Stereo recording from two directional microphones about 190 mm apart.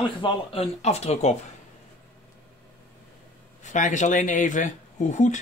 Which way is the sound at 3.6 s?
40° left (ahead or behind).